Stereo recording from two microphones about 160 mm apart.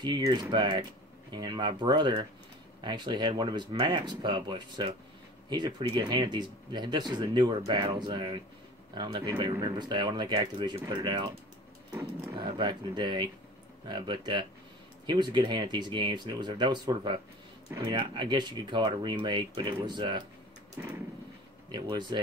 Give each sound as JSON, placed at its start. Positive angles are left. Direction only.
{"t": 0.0, "sound": "speech", "side_deg": -30}
{"t": 11.9, "sound": "speech", "side_deg": -15}
{"t": 12.4, "sound": "speech", "side_deg": -30}
{"t": 20.7, "sound": "a sound", "side_deg": -20}
{"t": 21.7, "sound": "speech", "side_deg": -30}